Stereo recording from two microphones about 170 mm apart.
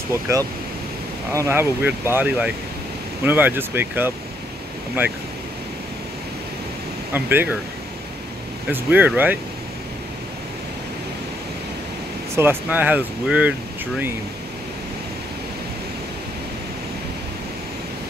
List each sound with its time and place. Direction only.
0.1 s speech: 20° right (ahead or behind)
7.2 s speech: 10° right (ahead or behind)
8.7 s speech: 10° right (ahead or behind)
12.4 s speech: 10° right (ahead or behind)